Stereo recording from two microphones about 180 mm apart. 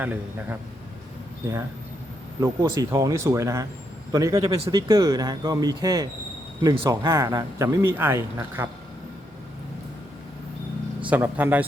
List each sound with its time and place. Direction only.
0.0 s speech: 10° right (ahead or behind)
2.4 s a man's voice: 20° right (ahead or behind)
11.1 s speech: 10° right (ahead or behind)